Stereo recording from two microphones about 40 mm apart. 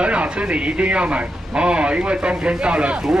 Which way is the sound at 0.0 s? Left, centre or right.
Right.